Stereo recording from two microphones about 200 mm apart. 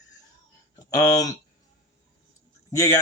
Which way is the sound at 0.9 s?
20° left (ahead or behind).